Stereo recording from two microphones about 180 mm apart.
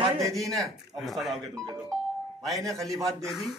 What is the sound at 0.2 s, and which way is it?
Speech, 15° right (ahead or behind).